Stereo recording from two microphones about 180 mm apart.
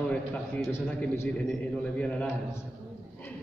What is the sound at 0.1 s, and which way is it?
Speech, 10° left (ahead or behind).